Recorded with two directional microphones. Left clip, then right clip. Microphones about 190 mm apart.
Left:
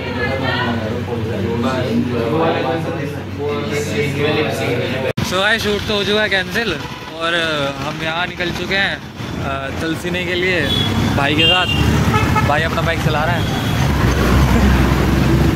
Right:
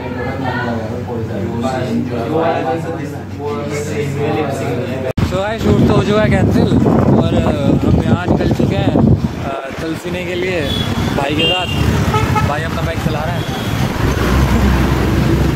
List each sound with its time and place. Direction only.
5.9 s speech: 20° right (ahead or behind)
11.2 s speech: centre (ahead or behind)